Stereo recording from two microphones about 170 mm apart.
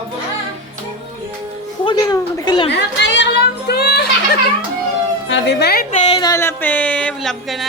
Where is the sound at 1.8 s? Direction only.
25° left (ahead or behind).